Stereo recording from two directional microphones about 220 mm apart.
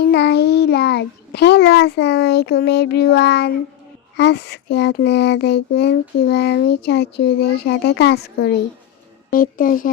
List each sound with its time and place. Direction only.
0.1 s a child's voice: 50° left (ahead or behind)
4.2 s a sound: 50° left (ahead or behind)
9.3 s speech: 40° left (ahead or behind)